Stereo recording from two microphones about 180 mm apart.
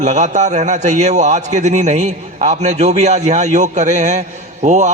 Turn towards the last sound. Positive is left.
turn(degrees=-40)  # may be behind; listen again after turning